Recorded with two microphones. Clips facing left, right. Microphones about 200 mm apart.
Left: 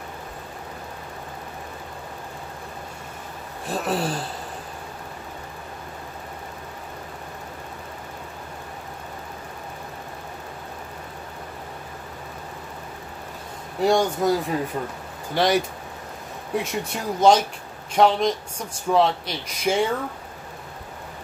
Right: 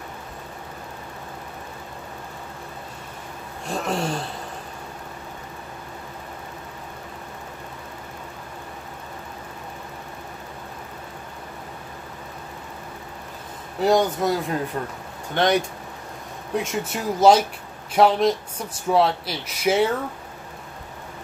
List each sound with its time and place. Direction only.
3.6 s speech: 5° left (ahead or behind)
13.7 s speech: centre (ahead or behind)